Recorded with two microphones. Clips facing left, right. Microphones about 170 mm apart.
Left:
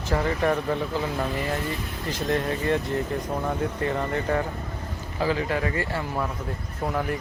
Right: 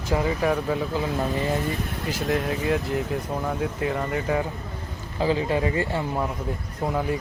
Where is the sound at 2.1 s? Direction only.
5° right (ahead or behind).